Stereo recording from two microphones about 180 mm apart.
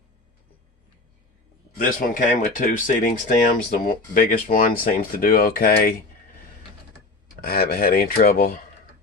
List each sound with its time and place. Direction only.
1.8 s speech: 50° left (ahead or behind)
7.4 s rub: 60° left (ahead or behind)